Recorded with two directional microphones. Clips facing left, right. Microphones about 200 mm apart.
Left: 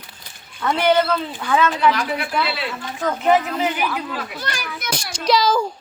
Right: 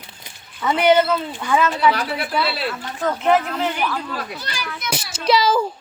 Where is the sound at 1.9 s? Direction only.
35° right (ahead or behind).